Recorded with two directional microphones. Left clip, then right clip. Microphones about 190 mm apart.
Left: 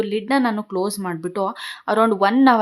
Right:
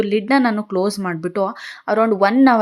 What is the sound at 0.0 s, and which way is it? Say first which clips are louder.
A woman's voice: right 3 dB; 20° right (ahead or behind).